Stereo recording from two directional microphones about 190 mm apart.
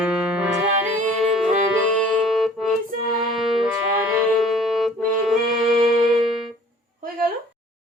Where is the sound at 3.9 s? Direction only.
5° right (ahead or behind).